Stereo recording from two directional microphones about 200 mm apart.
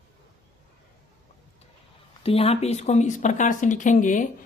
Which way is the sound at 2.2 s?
30° left (ahead or behind).